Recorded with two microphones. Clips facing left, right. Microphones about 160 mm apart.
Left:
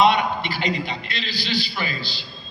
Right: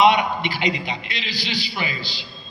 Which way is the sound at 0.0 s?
15° right (ahead or behind).